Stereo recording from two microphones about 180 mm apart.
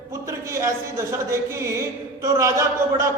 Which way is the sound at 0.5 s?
15° right (ahead or behind).